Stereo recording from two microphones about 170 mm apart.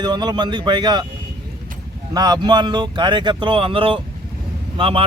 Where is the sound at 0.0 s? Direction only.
25° right (ahead or behind).